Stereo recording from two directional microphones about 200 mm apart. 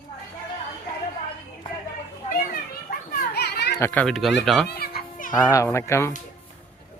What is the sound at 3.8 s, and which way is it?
Speech, 10° left (ahead or behind).